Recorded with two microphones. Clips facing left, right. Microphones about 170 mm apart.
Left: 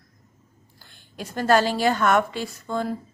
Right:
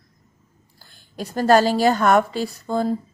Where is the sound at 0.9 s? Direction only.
40° right (ahead or behind).